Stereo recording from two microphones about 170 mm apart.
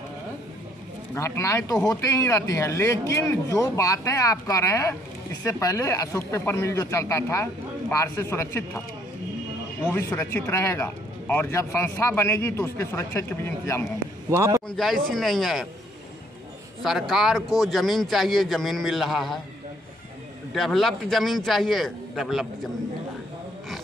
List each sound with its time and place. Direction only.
1.1 s speech: 15° left (ahead or behind)
9.8 s speech: 15° left (ahead or behind)
14.3 s speech: 15° right (ahead or behind)
14.8 s a man's voice: 5° left (ahead or behind)
16.8 s a man's voice: centre (ahead or behind)
20.5 s a man's voice: centre (ahead or behind)